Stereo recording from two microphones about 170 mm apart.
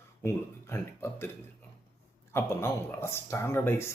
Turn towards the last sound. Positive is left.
turn(degrees=15)  # may be behind; listen again after turning